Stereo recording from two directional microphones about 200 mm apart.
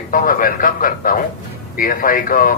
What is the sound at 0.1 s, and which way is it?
A man's voice, 45° left (ahead or behind).